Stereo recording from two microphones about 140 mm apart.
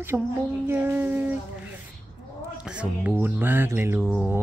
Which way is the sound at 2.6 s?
5° right (ahead or behind).